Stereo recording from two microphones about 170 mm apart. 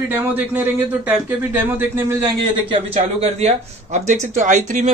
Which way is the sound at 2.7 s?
35° right (ahead or behind).